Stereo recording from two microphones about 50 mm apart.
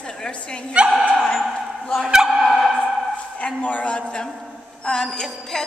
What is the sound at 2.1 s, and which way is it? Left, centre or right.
Speech, centre.